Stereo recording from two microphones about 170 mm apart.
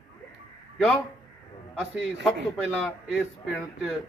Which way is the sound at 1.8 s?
Centre (ahead or behind).